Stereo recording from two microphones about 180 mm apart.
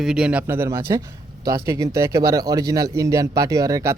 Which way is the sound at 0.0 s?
5° right (ahead or behind).